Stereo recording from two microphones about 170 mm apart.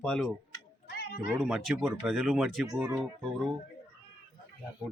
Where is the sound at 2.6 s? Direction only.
20° right (ahead or behind).